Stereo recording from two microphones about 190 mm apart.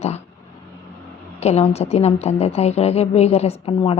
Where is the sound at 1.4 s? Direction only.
35° left (ahead or behind).